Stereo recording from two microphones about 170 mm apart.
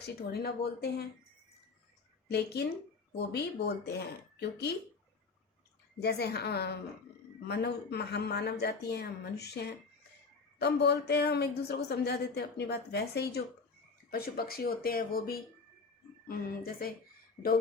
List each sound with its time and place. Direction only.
0.0 s speech: 70° left (ahead or behind)
2.2 s speech: 70° left (ahead or behind)
3.8 s speech: 75° left (ahead or behind)
6.0 s speech: 70° left (ahead or behind)